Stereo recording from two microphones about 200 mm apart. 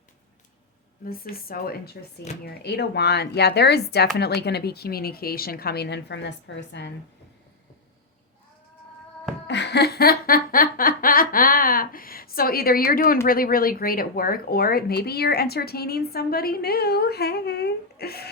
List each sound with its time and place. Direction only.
1.0 s speech: 45° left (ahead or behind)
9.5 s a sound: 60° left (ahead or behind)
13.2 s speech: 45° left (ahead or behind)